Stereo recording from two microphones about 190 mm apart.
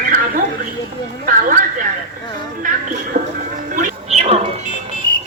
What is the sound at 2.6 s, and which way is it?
Music, 45° right (ahead or behind).